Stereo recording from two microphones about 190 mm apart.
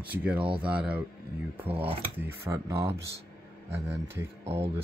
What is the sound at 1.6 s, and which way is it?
Speech, 30° right (ahead or behind).